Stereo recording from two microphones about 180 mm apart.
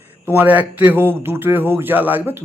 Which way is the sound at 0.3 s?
10° right (ahead or behind).